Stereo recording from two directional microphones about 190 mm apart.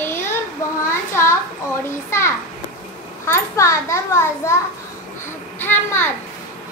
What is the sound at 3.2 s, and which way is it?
A child's voice, 15° left (ahead or behind).